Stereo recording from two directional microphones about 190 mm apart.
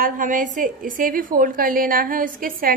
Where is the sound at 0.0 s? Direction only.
45° right (ahead or behind).